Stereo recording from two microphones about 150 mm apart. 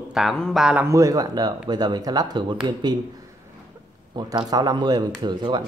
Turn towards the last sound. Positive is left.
turn(degrees=-30)  # may be behind; listen again after turning